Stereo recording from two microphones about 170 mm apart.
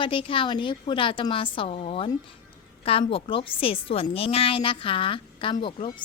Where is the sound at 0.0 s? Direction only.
30° left (ahead or behind).